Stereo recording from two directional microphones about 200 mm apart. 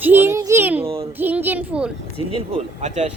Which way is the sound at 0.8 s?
25° right (ahead or behind).